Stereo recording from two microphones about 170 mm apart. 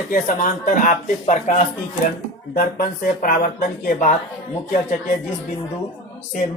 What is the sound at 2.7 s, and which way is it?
Speech, 55° left (ahead or behind).